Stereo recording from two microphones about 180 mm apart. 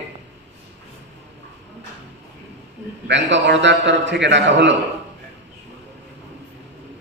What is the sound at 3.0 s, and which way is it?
A man's voice, 80° right.